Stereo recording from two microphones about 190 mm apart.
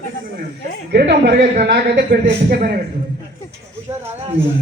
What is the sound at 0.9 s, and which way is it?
A woman's voice, 60° right (ahead or behind).